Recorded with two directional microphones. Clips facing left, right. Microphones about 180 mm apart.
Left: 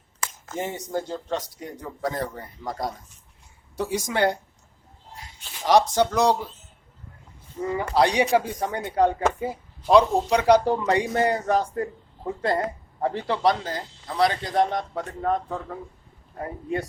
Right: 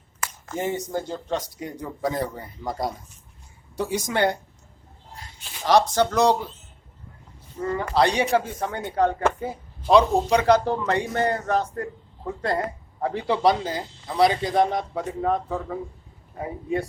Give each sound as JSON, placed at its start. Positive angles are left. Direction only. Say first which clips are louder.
{"t": 0.6, "sound": "speech", "louder": "right 2 dB", "side_deg": 0}
{"t": 3.8, "sound": "speech", "louder": "even", "side_deg": 5}
{"t": 5.6, "sound": "speech", "louder": "even", "side_deg": 15}
{"t": 7.6, "sound": "speech", "louder": "even", "side_deg": 10}
{"t": 10.4, "sound": "speech", "louder": "left 1 dB", "side_deg": 10}